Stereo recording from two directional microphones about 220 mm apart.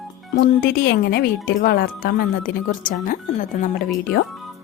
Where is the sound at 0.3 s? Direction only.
45° left (ahead or behind).